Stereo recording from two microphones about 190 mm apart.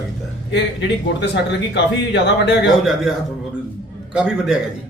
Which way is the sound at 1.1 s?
65° left (ahead or behind).